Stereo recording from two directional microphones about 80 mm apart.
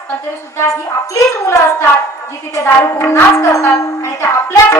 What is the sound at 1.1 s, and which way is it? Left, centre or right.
Music, left.